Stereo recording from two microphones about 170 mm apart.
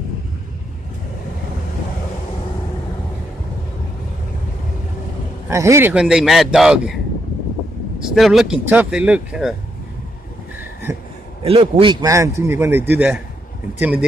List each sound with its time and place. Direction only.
5.5 s speech: 15° right (ahead or behind)
8.0 s speech: centre (ahead or behind)
11.4 s a man's voice: 30° right (ahead or behind); by 14.0 s 10° right (ahead or behind)